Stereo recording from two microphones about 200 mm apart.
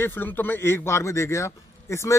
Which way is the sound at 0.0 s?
10° left (ahead or behind).